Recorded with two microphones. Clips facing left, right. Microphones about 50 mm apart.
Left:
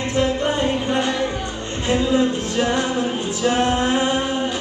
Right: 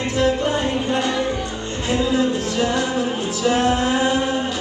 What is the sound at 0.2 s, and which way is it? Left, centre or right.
Music, left.